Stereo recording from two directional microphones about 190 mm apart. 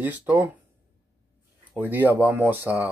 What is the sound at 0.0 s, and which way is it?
Speech, 10° right (ahead or behind).